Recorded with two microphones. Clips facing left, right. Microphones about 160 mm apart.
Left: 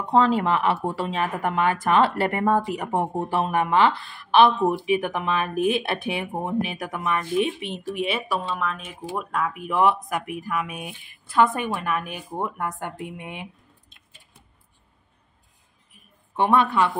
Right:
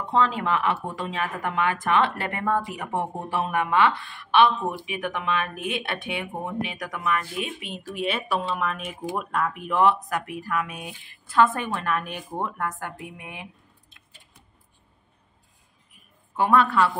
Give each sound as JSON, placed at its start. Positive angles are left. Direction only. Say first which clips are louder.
{"t": 0.1, "sound": "speech", "louder": "left 4 dB", "side_deg": 35}
{"t": 8.0, "sound": "a woman's voice", "louder": "even", "side_deg": 10}
{"t": 8.5, "sound": "a woman's voice", "louder": "right 1 dB", "side_deg": -5}
{"t": 16.3, "sound": "a woman's voice", "louder": "even", "side_deg": 25}